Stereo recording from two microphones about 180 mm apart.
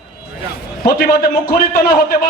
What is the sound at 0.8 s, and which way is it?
A man's voice, 55° left (ahead or behind).